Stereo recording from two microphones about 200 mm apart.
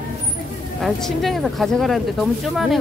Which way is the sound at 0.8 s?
Centre (ahead or behind).